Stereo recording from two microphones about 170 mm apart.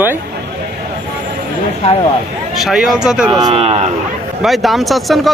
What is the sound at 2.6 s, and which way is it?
Speech, 5° right (ahead or behind).